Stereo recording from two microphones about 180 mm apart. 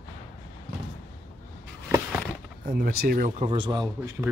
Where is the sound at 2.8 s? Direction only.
55° right (ahead or behind).